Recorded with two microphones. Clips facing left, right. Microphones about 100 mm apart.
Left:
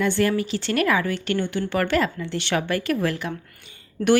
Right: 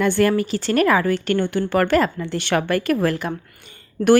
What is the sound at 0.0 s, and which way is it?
Speech, 50° right (ahead or behind).